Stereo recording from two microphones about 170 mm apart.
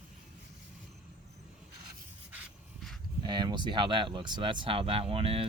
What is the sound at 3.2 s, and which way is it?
Speech, 25° right (ahead or behind).